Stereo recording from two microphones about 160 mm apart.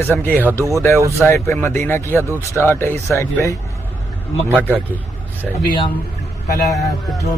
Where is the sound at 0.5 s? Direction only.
20° right (ahead or behind).